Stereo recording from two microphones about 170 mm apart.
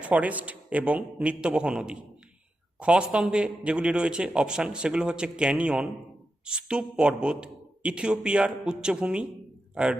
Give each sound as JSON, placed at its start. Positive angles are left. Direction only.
{"t": 0.0, "sound": "a man's voice", "side_deg": -10}